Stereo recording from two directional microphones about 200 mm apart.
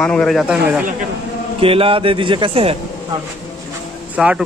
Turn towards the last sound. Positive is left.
turn(degrees=-5)  # may be behind; listen again after turning